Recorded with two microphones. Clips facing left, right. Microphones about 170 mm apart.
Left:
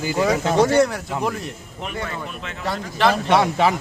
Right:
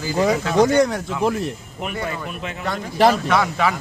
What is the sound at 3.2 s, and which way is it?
Speech, 25° left (ahead or behind).